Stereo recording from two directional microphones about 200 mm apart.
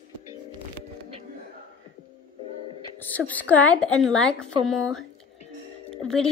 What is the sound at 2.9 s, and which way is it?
A woman's voice, 10° left (ahead or behind).